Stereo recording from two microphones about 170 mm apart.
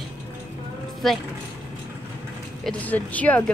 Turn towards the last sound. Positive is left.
turn(degrees=10)  # may be behind; listen again after turning